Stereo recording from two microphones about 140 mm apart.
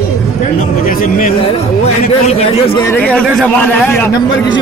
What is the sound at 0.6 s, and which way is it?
Speech, 85° left.